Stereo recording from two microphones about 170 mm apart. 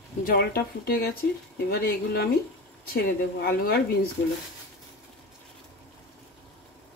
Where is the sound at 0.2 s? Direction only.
60° left (ahead or behind).